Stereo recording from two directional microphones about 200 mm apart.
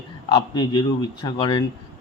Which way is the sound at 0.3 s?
20° left (ahead or behind).